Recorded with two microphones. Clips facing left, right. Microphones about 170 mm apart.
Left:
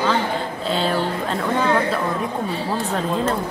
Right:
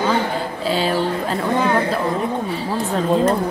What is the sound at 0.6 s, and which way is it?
Speech, 5° right (ahead or behind).